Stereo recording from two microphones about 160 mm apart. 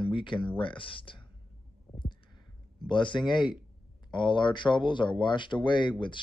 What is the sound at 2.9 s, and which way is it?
Speech, 30° left (ahead or behind).